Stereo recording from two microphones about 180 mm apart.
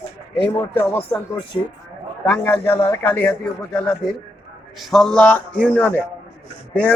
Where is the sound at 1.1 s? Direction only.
25° left (ahead or behind).